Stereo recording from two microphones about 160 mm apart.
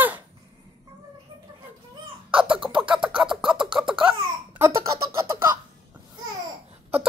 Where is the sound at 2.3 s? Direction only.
5° right (ahead or behind).